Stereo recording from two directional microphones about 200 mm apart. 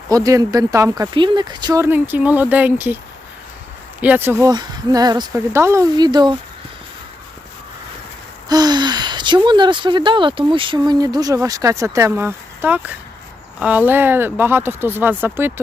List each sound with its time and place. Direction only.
0.1 s speech: 15° right (ahead or behind)
4.0 s speech: 10° right (ahead or behind)
8.4 s speech: 20° right (ahead or behind)